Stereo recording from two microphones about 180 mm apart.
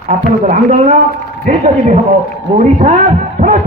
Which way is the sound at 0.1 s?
45° right (ahead or behind).